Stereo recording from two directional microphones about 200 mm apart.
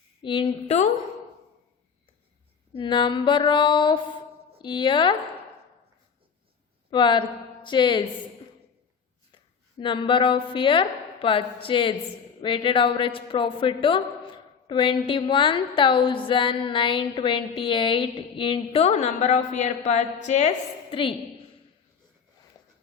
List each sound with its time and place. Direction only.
0.2 s a woman's voice: 25° left (ahead or behind)
2.7 s a woman's voice: 25° left (ahead or behind)
6.9 s a woman's voice: 25° left (ahead or behind)
9.3 s a woman's voice: 25° left (ahead or behind)